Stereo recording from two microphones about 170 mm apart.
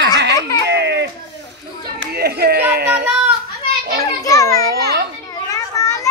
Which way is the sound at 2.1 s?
70° right (ahead or behind).